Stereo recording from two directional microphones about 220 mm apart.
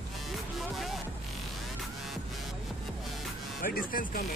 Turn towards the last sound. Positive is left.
turn(degrees=40)  # may be behind; listen again after turning